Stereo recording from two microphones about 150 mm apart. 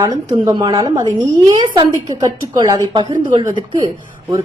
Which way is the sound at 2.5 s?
25° right (ahead or behind).